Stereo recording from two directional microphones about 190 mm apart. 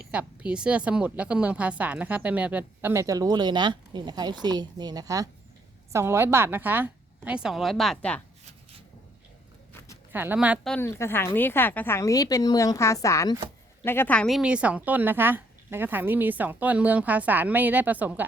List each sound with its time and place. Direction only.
0.1 s a woman's voice: 5° right (ahead or behind)
10.1 s speech: 10° right (ahead or behind)
10.7 s a woman's voice: 15° left (ahead or behind); by 18.3 s 10° right (ahead or behind)